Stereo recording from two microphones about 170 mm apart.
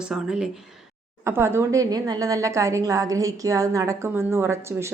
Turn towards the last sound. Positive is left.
turn(degrees=-15)  # may be behind; listen again after turning